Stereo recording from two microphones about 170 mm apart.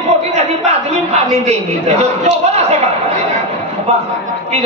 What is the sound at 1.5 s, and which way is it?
A man's voice, 40° right (ahead or behind).